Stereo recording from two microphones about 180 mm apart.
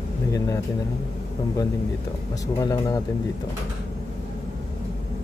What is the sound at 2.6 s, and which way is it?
Speech, 20° left (ahead or behind).